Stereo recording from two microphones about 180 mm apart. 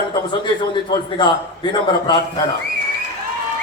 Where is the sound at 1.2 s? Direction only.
25° left (ahead or behind).